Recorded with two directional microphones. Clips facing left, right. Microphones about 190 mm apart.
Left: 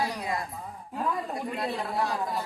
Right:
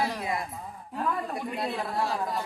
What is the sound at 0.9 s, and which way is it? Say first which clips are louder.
Speech: even; 10° left (ahead or behind).